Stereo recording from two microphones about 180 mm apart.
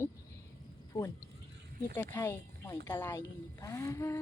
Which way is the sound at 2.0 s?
15° left (ahead or behind).